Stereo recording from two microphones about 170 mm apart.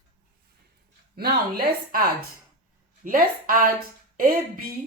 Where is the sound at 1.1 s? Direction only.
65° right (ahead or behind).